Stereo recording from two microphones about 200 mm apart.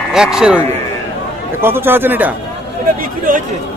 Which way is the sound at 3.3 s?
45° right (ahead or behind).